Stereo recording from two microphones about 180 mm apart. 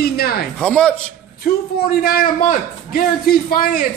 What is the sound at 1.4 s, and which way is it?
A man's voice, 55° left (ahead or behind).